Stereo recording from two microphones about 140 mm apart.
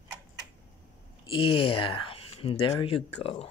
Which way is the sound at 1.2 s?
40° left (ahead or behind).